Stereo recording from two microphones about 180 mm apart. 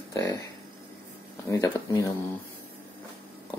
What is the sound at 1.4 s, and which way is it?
Speech, 20° left (ahead or behind).